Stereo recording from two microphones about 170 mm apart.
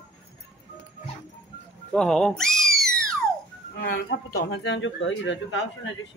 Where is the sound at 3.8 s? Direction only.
65° left (ahead or behind); by 5.6 s 90° left.